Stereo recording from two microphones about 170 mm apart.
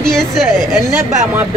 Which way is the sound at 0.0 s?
5° left (ahead or behind).